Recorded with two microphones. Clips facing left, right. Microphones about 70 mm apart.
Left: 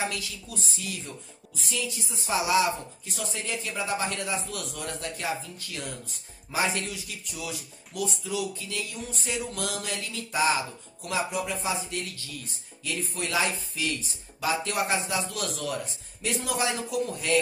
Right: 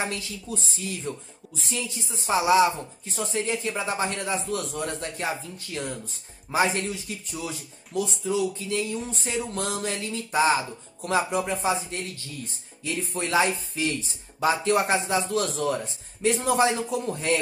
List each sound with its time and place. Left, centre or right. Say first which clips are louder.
0.0 s speech: right 1 dB; right